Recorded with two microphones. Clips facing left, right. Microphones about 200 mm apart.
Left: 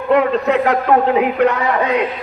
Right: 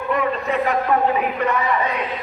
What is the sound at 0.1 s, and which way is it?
A man's voice, 75° left (ahead or behind).